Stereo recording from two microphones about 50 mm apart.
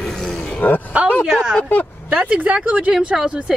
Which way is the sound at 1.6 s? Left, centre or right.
Left.